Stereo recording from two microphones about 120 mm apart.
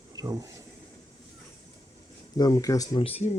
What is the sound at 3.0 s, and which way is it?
Speech, 55° left (ahead or behind).